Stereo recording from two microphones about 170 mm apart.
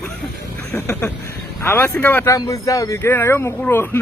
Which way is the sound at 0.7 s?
10° left (ahead or behind).